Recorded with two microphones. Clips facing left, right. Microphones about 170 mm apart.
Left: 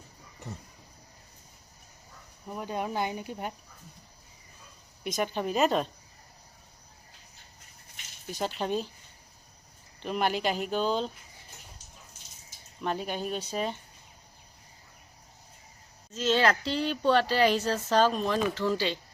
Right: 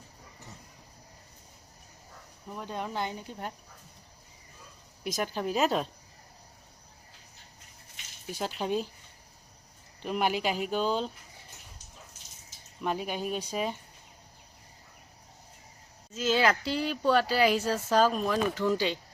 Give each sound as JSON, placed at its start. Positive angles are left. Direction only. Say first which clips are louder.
{"t": 2.5, "sound": "speech", "louder": "left 3 dB", "side_deg": 10}
{"t": 5.0, "sound": "speech", "louder": "left 1 dB", "side_deg": -5}
{"t": 8.3, "sound": "speech", "louder": "left 1 dB", "side_deg": -10}
{"t": 10.0, "sound": "speech", "louder": "even", "side_deg": -5}
{"t": 12.8, "sound": "speech", "louder": "even", "side_deg": -5}
{"t": 16.1, "sound": "speech", "louder": "left 1 dB", "side_deg": -5}
{"t": 18.7, "sound": "speech", "louder": "right 1 dB", "side_deg": -15}